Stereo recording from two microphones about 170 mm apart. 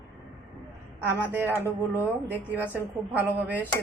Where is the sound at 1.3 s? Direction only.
10° right (ahead or behind).